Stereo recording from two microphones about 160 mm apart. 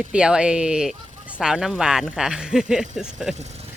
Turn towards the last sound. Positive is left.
turn(degrees=-45)  # may be behind; listen again after turning